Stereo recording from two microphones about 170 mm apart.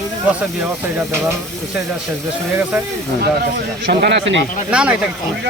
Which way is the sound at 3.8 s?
75° right (ahead or behind).